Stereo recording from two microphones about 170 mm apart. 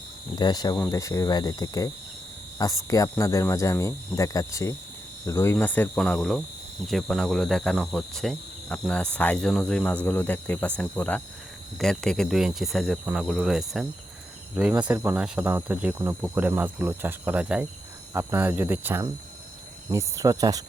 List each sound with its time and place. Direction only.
0.3 s cricket: 25° left (ahead or behind); by 6.4 s 5° left (ahead or behind)
6.8 s speech: centre (ahead or behind)
10.8 s cricket: 10° left (ahead or behind)
11.8 s speech: 5° left (ahead or behind); by 20.7 s 20° right (ahead or behind)